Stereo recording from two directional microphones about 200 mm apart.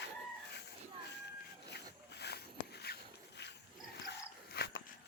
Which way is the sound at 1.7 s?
55° left (ahead or behind).